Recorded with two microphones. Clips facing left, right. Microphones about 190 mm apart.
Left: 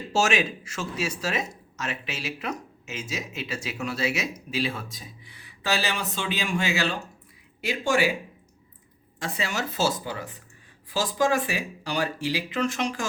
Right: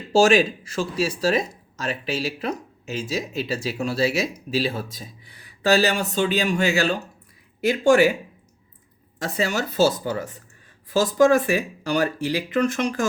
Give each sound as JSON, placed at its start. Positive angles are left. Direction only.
{"t": 0.1, "sound": "speech", "side_deg": -35}
{"t": 9.1, "sound": "speech", "side_deg": -40}